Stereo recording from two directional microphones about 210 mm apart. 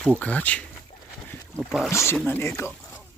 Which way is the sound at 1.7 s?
5° right (ahead or behind).